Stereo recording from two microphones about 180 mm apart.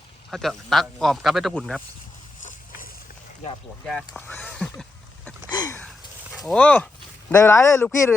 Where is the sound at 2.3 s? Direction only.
45° left (ahead or behind).